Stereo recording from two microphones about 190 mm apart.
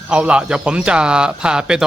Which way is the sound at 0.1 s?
5° right (ahead or behind).